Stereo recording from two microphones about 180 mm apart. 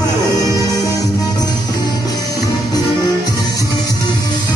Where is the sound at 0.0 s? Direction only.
20° left (ahead or behind).